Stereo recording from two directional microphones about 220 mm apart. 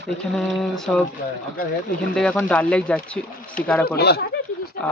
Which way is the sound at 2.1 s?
5° left (ahead or behind).